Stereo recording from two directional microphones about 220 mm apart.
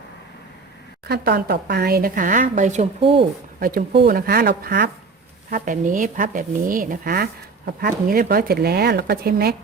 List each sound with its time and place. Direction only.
1.0 s speech: 45° right (ahead or behind); by 3.2 s 30° right (ahead or behind)
3.6 s speech: 40° right (ahead or behind)